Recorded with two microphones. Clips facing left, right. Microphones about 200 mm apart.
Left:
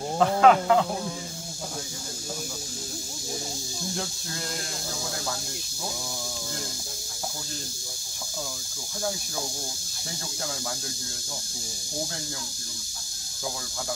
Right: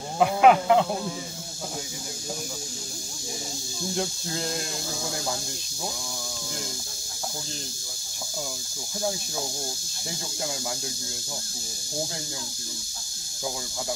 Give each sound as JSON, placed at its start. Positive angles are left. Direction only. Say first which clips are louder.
{"t": 0.2, "sound": "speech", "louder": "right 1 dB", "side_deg": -15}
{"t": 3.9, "sound": "speech", "louder": "right 7 dB", "side_deg": -20}